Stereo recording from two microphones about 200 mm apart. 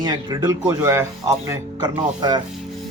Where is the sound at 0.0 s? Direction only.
20° right (ahead or behind).